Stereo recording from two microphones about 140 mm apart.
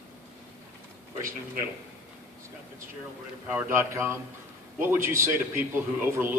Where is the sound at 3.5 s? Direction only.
20° right (ahead or behind).